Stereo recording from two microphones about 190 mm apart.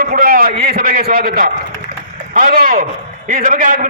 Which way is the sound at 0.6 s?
50° right (ahead or behind).